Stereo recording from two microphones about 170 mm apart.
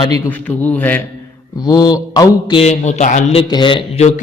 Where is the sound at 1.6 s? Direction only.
25° left (ahead or behind).